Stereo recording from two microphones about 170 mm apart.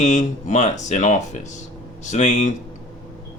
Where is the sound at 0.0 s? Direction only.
45° left (ahead or behind).